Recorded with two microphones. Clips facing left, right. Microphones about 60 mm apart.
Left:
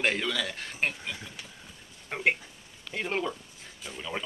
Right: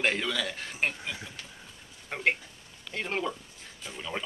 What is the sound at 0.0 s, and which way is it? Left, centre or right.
A man's voice, centre.